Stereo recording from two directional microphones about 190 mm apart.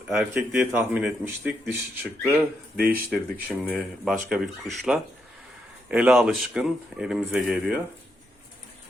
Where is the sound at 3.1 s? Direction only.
5° left (ahead or behind).